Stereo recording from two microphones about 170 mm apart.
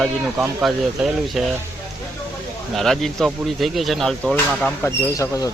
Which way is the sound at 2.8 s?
Centre (ahead or behind).